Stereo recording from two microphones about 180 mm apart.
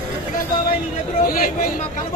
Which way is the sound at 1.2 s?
55° left (ahead or behind).